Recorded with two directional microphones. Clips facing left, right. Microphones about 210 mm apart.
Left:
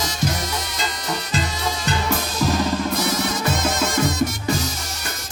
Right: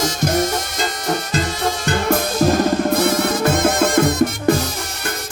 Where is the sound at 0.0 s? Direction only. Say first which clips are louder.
Right 7 dB; 50° right (ahead or behind).